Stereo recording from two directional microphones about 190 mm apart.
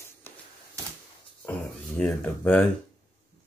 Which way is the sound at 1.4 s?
5° left (ahead or behind).